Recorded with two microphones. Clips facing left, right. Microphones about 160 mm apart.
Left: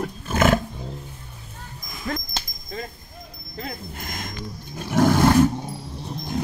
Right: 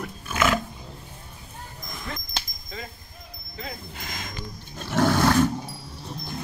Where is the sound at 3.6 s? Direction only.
50° left (ahead or behind).